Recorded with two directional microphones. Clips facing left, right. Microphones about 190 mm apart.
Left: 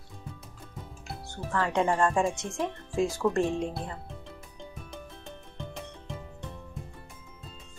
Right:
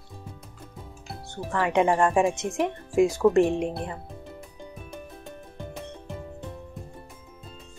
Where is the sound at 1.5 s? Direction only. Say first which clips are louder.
Right 4 dB; 20° right (ahead or behind).